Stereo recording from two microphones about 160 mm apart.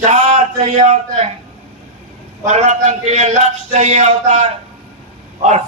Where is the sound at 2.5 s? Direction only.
45° right (ahead or behind).